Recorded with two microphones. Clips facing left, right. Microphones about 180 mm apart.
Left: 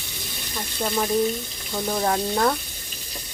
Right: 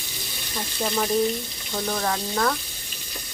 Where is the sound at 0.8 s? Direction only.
5° left (ahead or behind).